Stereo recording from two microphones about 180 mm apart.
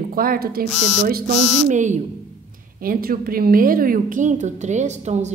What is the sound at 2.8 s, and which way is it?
A woman's voice, 55° right (ahead or behind).